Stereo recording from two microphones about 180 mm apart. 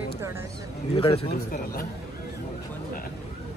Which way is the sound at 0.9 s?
30° left (ahead or behind).